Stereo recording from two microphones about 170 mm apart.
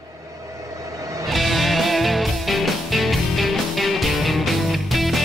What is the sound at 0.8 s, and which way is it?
Music, 20° right (ahead or behind).